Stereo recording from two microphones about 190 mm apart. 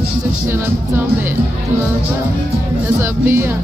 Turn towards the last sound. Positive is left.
turn(degrees=-15)  # may be behind; listen again after turning